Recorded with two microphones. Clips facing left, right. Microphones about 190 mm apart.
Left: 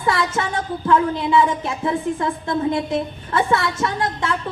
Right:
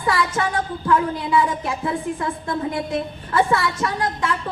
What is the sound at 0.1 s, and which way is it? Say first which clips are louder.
A woman's voice: even; 25° left (ahead or behind).